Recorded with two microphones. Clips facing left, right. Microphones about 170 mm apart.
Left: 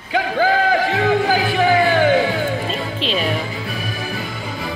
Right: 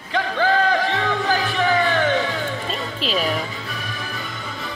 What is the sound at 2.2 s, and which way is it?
Music, 30° left (ahead or behind).